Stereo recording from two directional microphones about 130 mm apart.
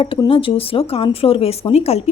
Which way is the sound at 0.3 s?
45° left (ahead or behind).